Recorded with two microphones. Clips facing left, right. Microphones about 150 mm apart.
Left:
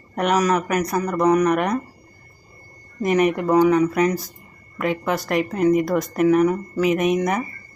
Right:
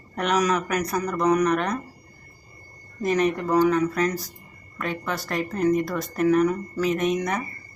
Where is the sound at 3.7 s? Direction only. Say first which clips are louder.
Left 5 dB; 15° left (ahead or behind).